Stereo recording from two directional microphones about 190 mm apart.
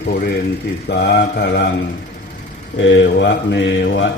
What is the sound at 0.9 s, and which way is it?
Mantra, 60° left (ahead or behind).